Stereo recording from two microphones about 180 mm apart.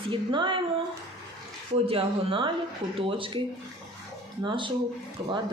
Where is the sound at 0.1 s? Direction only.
25° right (ahead or behind).